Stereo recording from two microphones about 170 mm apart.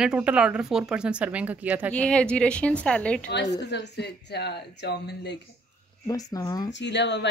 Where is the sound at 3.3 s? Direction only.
90° left.